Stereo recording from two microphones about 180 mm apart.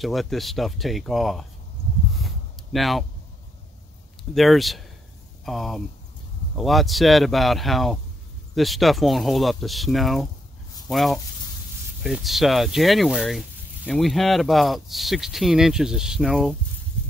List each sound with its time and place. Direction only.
0.0 s speech: centre (ahead or behind)
2.1 s a sound: centre (ahead or behind)
4.2 s speech: centre (ahead or behind)